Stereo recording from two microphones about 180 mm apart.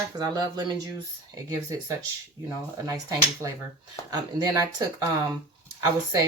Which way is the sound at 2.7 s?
15° right (ahead or behind).